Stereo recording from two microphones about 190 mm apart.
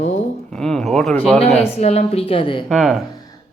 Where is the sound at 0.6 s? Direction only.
Centre (ahead or behind).